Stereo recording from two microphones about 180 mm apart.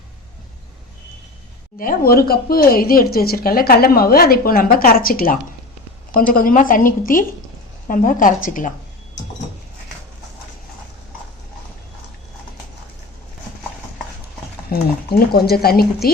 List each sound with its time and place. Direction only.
1.8 s a woman's voice: 55° left (ahead or behind)
14.7 s speech: 60° left (ahead or behind)